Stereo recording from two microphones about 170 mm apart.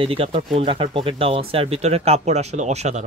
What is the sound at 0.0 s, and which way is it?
A man's voice, 35° right (ahead or behind).